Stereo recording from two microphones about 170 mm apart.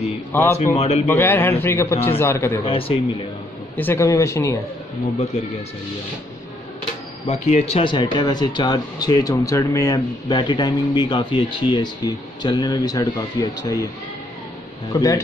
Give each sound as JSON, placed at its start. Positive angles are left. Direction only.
{"t": 0.3, "sound": "a man's voice", "side_deg": 15}
{"t": 0.7, "sound": "speech", "side_deg": 40}
{"t": 1.0, "sound": "a man's voice", "side_deg": 10}
{"t": 2.6, "sound": "speech", "side_deg": 35}
{"t": 3.7, "sound": "a man's voice", "side_deg": 15}
{"t": 7.2, "sound": "speech", "side_deg": 40}
{"t": 14.9, "sound": "speech", "side_deg": 20}